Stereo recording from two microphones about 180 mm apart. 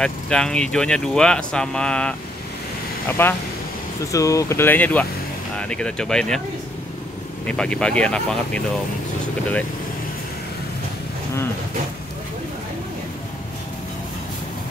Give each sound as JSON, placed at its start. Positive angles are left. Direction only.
{"t": 0.0, "sound": "speech", "side_deg": 5}
{"t": 7.4, "sound": "speech", "side_deg": 5}